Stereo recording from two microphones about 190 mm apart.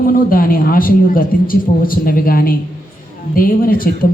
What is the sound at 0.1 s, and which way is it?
A man's voice, 50° left (ahead or behind).